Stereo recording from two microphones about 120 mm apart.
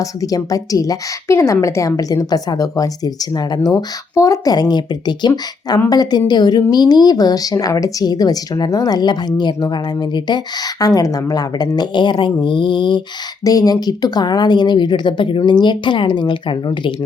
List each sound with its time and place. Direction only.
0.0 s a woman's voice: 30° left (ahead or behind)
13.4 s a woman's voice: 30° left (ahead or behind)